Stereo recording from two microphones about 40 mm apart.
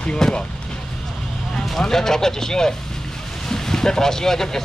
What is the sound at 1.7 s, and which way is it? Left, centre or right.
Speech, centre.